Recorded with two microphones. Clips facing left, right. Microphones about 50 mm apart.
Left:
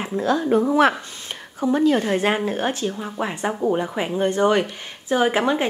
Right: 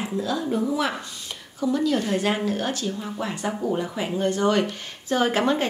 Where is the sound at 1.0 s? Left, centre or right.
Left.